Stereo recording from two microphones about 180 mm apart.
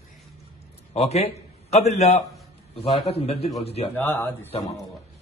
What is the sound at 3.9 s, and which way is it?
Speech, 10° left (ahead or behind).